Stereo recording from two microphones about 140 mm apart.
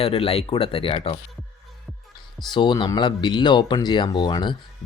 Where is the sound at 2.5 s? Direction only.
35° left (ahead or behind).